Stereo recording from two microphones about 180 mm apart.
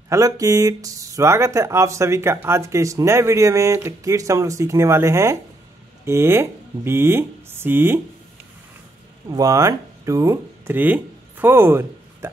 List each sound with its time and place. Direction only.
0.1 s speech: 20° right (ahead or behind)
9.3 s speech: 20° right (ahead or behind)